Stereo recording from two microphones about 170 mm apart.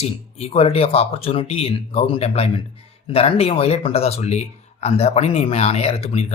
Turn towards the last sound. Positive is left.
turn(degrees=40)  # may be behind; listen again after turning